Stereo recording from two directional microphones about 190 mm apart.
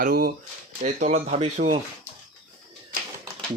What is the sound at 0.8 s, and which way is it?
Speech, 35° right (ahead or behind).